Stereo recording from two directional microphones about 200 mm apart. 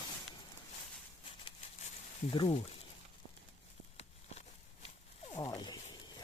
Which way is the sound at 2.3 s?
25° left (ahead or behind).